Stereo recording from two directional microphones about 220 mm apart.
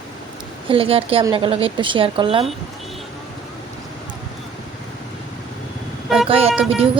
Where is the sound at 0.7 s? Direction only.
25° right (ahead or behind).